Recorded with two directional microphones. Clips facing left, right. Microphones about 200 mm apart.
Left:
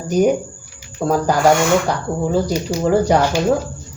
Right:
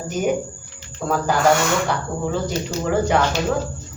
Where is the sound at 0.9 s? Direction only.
40° left (ahead or behind).